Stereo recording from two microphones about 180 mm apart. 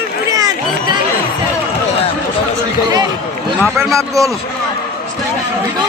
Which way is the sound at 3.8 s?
15° right (ahead or behind).